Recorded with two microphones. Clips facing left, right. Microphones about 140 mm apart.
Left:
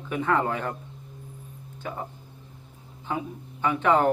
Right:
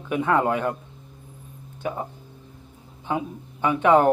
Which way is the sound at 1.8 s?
20° right (ahead or behind).